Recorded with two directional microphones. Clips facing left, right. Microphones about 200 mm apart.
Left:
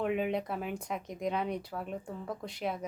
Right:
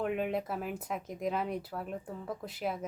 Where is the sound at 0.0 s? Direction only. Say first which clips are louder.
Left 1 dB; centre (ahead or behind).